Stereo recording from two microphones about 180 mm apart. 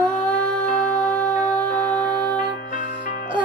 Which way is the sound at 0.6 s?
45° left (ahead or behind).